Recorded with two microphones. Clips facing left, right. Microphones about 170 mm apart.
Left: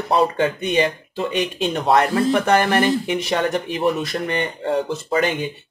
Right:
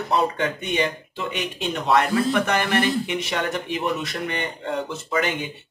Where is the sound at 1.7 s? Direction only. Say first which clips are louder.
Left 2 dB; 35° left (ahead or behind).